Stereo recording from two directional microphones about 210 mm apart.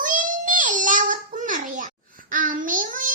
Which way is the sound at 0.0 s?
40° right (ahead or behind).